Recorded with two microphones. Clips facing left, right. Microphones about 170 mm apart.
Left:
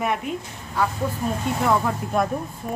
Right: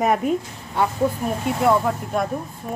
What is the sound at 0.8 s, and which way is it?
Speech, 25° right (ahead or behind).